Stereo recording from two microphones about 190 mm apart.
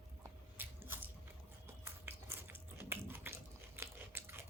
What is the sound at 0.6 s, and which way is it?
Biting, 10° right (ahead or behind).